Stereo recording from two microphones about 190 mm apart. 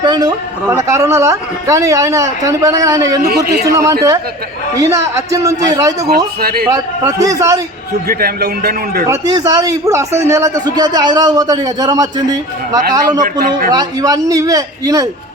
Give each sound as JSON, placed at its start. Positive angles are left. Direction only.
{"t": 0.0, "sound": "a man's voice", "side_deg": -20}
{"t": 3.2, "sound": "a man's voice", "side_deg": -55}
{"t": 3.7, "sound": "a woman's voice", "side_deg": -15}
{"t": 6.4, "sound": "a man's voice", "side_deg": -50}
{"t": 6.7, "sound": "a woman's voice", "side_deg": -20}
{"t": 8.0, "sound": "a man's voice", "side_deg": -55}
{"t": 9.0, "sound": "a man's voice", "side_deg": -20}